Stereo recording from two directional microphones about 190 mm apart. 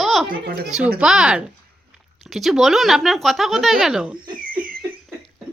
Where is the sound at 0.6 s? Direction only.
Centre (ahead or behind).